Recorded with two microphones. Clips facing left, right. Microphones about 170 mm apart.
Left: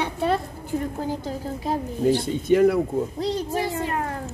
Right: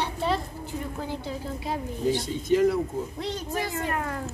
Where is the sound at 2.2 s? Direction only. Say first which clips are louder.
Left 3 dB; 60° left (ahead or behind).